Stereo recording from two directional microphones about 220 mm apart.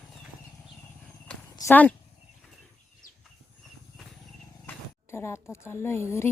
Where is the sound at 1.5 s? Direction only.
10° left (ahead or behind).